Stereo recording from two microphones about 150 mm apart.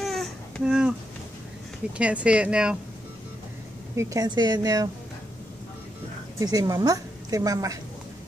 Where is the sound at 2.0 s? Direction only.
10° right (ahead or behind).